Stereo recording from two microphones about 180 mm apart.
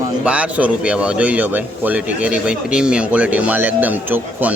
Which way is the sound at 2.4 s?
5° right (ahead or behind).